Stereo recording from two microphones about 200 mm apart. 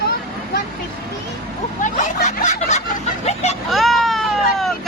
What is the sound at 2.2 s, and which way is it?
Snicker, 35° left (ahead or behind).